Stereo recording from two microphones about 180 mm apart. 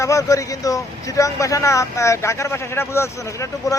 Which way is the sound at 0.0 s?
20° left (ahead or behind).